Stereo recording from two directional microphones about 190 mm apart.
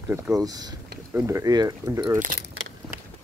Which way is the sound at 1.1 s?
15° right (ahead or behind).